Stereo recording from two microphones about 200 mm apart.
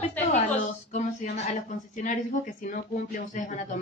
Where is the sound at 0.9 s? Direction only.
35° left (ahead or behind).